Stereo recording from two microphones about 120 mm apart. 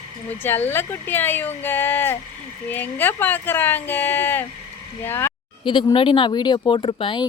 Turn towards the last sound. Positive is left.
turn(degrees=45)  # may be behind; listen again after turning